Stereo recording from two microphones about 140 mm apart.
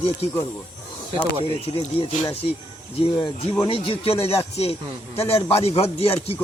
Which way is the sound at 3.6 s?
45° left (ahead or behind).